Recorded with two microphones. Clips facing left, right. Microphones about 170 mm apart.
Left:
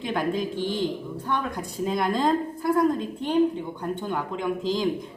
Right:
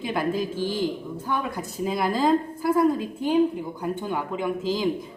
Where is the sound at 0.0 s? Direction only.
5° right (ahead or behind).